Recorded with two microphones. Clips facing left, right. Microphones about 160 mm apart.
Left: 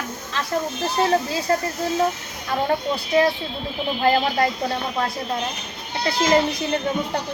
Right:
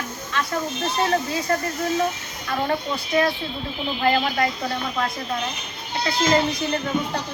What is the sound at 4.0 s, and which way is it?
Speech, 30° left (ahead or behind).